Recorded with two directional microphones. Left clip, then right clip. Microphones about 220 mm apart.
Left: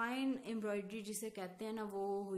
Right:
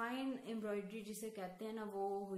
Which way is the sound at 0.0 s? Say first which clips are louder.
Left 3 dB; 45° left (ahead or behind).